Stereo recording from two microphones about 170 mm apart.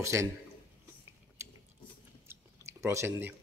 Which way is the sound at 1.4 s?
15° right (ahead or behind).